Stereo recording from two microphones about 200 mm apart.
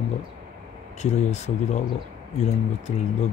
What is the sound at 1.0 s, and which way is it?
Speech, 35° left (ahead or behind).